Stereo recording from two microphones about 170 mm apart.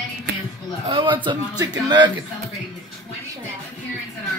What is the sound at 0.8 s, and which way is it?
Speech, 30° right (ahead or behind).